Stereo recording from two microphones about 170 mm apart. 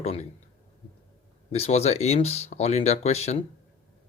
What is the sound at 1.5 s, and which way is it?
Speech, 40° left (ahead or behind).